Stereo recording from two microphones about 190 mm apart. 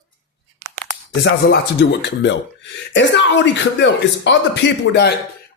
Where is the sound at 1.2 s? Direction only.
65° left (ahead or behind).